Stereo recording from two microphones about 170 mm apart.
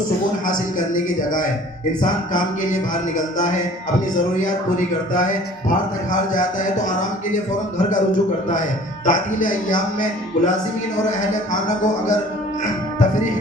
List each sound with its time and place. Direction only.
0.4 s speech: 50° left (ahead or behind)
9.0 s speech: 50° left (ahead or behind)